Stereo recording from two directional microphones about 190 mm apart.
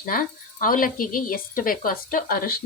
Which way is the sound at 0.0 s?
45° left (ahead or behind).